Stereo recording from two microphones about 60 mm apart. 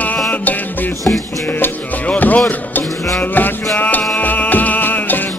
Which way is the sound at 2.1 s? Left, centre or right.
Left.